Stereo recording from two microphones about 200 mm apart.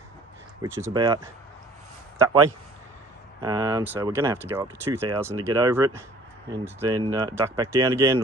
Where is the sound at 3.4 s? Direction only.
20° right (ahead or behind).